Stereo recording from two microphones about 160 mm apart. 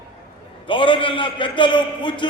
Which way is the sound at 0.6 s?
30° left (ahead or behind).